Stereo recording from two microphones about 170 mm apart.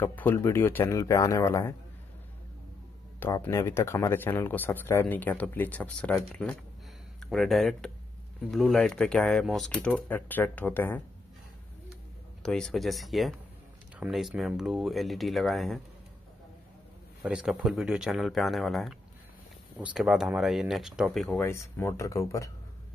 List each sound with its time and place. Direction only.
0.0 s speech: 10° left (ahead or behind)
3.2 s speech: 15° left (ahead or behind)
12.4 s speech: 5° left (ahead or behind)
17.2 s speech: 5° right (ahead or behind)
21.4 s speech: 15° left (ahead or behind)